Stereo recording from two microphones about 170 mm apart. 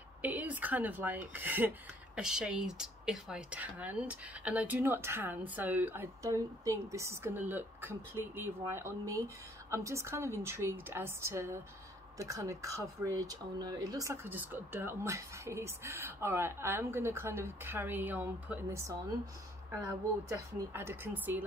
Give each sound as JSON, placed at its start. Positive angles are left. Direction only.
{"t": 0.2, "sound": "speech", "side_deg": -10}